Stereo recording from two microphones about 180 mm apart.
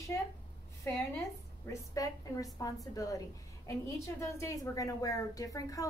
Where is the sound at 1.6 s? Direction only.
20° left (ahead or behind).